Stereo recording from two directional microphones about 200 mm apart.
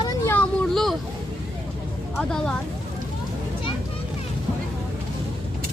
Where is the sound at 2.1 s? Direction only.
5° left (ahead or behind).